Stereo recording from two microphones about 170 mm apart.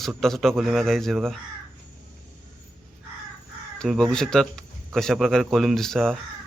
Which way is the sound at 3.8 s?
Centre (ahead or behind).